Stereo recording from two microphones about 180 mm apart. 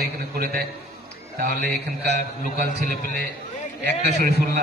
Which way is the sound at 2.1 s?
65° right (ahead or behind).